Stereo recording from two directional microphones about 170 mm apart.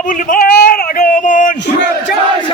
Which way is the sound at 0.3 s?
60° left (ahead or behind).